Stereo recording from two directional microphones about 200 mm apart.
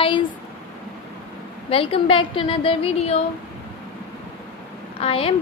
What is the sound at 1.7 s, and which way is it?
A woman's voice, 30° left (ahead or behind).